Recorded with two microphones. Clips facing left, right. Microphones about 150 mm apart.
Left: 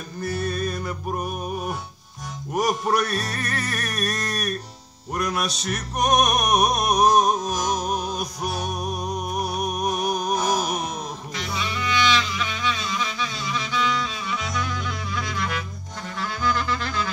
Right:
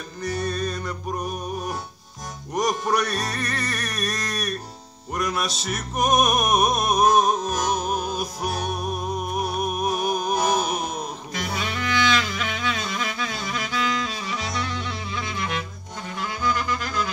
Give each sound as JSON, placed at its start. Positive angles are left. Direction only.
{"t": 0.2, "sound": "music", "side_deg": 5}
{"t": 2.5, "sound": "music", "side_deg": 5}
{"t": 11.4, "sound": "music", "side_deg": -50}
{"t": 14.2, "sound": "music", "side_deg": -35}